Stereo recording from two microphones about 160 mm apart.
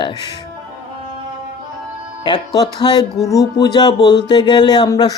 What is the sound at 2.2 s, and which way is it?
Speech, 30° left (ahead or behind).